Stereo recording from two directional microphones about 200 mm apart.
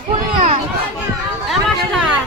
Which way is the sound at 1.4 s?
Centre (ahead or behind).